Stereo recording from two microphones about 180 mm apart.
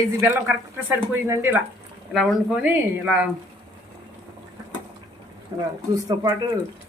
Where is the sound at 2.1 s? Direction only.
Centre (ahead or behind).